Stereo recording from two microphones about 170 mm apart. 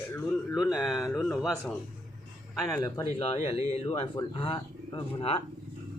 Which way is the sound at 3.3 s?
35° left (ahead or behind).